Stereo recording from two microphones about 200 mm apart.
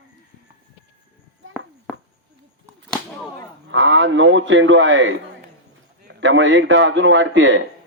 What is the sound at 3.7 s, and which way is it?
Radio, 75° right (ahead or behind).